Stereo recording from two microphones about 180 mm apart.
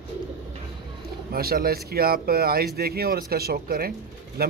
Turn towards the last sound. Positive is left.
turn(degrees=-60)  # may be behind; listen again after turning